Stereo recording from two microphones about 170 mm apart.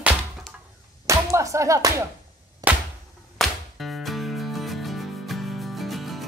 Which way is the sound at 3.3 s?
Centre (ahead or behind).